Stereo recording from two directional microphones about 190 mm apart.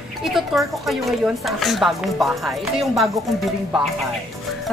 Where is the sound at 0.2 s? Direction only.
Centre (ahead or behind).